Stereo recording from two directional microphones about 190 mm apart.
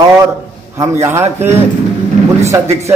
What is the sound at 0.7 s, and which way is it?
Speech, 15° right (ahead or behind).